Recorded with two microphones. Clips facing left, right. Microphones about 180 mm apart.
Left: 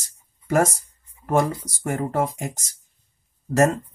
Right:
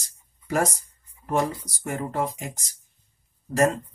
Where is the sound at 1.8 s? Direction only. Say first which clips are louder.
Left 4 dB; 50° left (ahead or behind).